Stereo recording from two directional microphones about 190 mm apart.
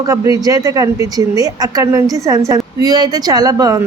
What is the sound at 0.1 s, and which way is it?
Speech, 20° right (ahead or behind).